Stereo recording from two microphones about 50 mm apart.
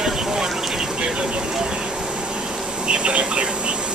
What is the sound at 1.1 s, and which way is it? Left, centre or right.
Vehicle, centre.